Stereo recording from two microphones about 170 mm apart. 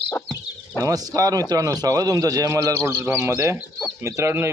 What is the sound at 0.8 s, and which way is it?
A man's voice, 20° right (ahead or behind).